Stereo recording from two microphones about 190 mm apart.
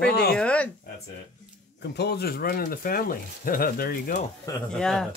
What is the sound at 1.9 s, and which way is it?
Speech, 60° left (ahead or behind).